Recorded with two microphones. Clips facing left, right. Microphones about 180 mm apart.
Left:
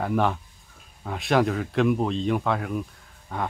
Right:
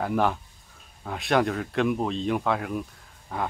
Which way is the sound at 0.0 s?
Centre (ahead or behind).